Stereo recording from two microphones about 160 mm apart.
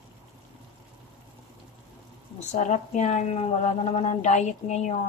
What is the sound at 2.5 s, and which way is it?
A woman's voice, 45° left (ahead or behind).